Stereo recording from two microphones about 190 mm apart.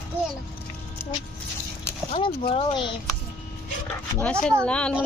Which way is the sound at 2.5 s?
25° left (ahead or behind).